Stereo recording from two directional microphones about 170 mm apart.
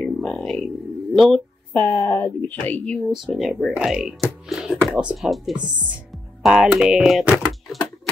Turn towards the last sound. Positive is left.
turn(degrees=0)  # may be behind; listen again after turning